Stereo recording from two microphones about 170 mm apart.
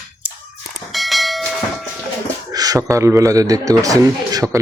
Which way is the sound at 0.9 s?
Centre (ahead or behind).